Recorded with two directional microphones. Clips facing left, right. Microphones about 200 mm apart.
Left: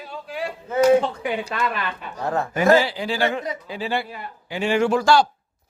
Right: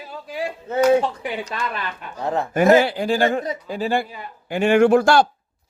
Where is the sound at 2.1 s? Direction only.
20° right (ahead or behind).